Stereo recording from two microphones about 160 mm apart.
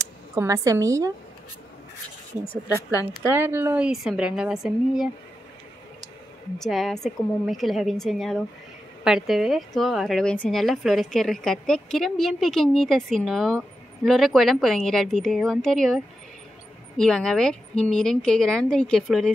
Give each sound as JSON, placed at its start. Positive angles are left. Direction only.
{"t": 0.3, "sound": "a woman's voice", "side_deg": -20}
{"t": 2.9, "sound": "a woman's voice", "side_deg": 20}
{"t": 3.3, "sound": "a woman's voice", "side_deg": -15}
{"t": 6.6, "sound": "a woman's voice", "side_deg": 0}